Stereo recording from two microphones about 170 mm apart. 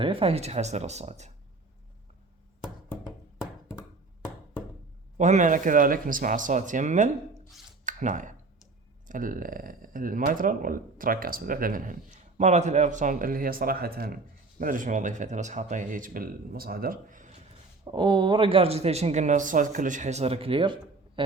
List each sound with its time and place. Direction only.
0.0 s speech: 30° right (ahead or behind)
5.1 s speech: 45° right (ahead or behind)
7.9 s clicking: 50° right (ahead or behind)
9.0 s speech: 55° right (ahead or behind)
17.8 s a man's voice: 25° right (ahead or behind)